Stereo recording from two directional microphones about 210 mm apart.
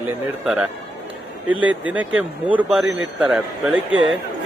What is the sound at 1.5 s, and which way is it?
Speech, 5° right (ahead or behind).